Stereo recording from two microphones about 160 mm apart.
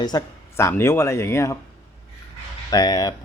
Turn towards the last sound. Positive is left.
turn(degrees=25)  # may be behind; listen again after turning